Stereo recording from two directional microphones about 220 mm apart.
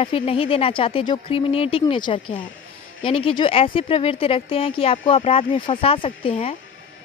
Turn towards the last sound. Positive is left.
turn(degrees=30)  # may be behind; listen again after turning